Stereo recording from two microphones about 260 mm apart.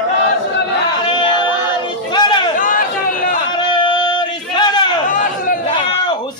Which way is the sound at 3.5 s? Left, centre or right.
Centre.